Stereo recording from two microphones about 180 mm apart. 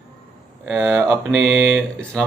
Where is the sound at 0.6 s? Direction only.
10° right (ahead or behind).